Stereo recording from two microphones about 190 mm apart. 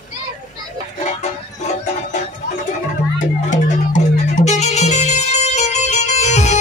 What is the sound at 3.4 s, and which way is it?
Music, 40° left (ahead or behind).